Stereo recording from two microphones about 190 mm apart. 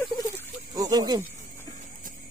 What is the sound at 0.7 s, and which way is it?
Speech, 20° right (ahead or behind).